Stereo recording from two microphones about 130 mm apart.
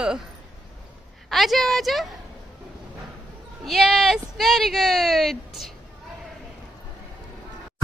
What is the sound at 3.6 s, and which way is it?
Speech, centre (ahead or behind).